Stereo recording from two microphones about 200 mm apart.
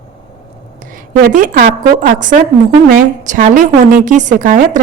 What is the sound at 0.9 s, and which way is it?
A woman's voice, 40° right (ahead or behind).